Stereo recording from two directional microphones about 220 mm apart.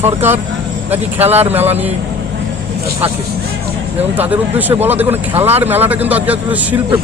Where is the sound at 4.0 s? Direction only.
10° right (ahead or behind).